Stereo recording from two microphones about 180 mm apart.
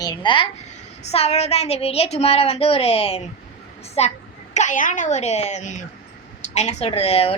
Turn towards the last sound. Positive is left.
turn(degrees=35)  # may be behind; listen again after turning